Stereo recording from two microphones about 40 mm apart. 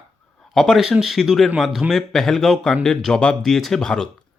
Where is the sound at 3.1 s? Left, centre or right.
Left.